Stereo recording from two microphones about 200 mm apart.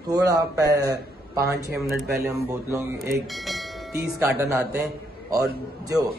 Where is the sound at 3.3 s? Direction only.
Centre (ahead or behind).